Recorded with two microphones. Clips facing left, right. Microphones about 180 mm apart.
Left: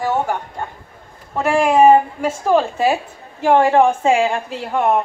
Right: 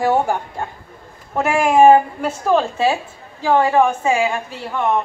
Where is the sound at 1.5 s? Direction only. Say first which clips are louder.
Even; centre (ahead or behind).